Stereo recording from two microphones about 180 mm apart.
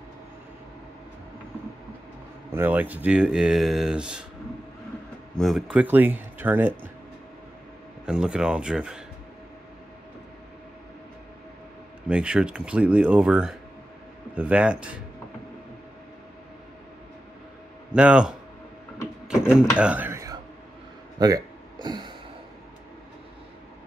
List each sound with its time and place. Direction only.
2.5 s speech: 10° right (ahead or behind)
5.4 s speech: 5° right (ahead or behind)
8.0 s speech: 5° right (ahead or behind)
12.1 s speech: 5° right (ahead or behind)
17.9 s speech: 5° right (ahead or behind)
19.8 s a sound: 10° right (ahead or behind); by 22.1 s 25° right (ahead or behind)